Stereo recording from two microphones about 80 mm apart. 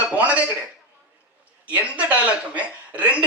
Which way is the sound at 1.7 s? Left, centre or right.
Centre.